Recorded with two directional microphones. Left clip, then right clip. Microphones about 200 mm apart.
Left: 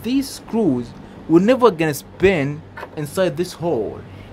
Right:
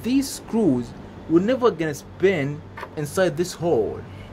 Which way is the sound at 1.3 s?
25° left (ahead or behind).